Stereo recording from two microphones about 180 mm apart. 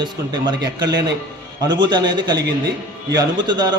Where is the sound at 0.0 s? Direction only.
25° right (ahead or behind).